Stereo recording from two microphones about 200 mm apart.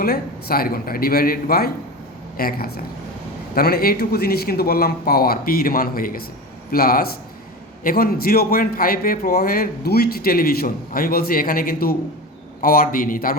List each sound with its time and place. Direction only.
0.0 s a man's voice: 50° left (ahead or behind)